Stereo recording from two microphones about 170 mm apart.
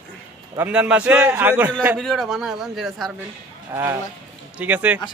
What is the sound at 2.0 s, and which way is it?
A man's voice, centre (ahead or behind).